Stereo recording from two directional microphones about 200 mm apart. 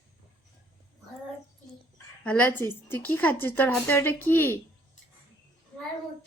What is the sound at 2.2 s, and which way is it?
Speech, 5° left (ahead or behind).